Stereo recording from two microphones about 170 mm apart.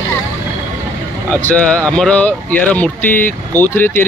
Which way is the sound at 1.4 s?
5° left (ahead or behind).